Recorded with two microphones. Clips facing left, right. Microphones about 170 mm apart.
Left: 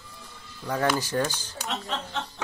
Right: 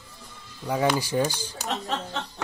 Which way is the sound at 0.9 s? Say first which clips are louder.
Right 2 dB; 10° right (ahead or behind).